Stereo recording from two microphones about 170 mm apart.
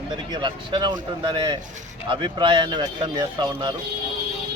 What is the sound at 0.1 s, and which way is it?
A man's voice, 25° right (ahead or behind).